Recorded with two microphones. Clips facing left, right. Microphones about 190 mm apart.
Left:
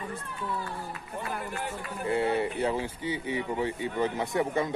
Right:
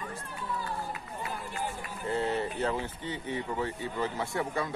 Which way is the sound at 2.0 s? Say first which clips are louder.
Left 3 dB; 10° left (ahead or behind).